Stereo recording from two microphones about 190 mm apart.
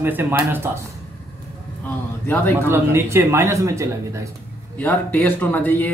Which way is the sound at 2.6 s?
15° right (ahead or behind).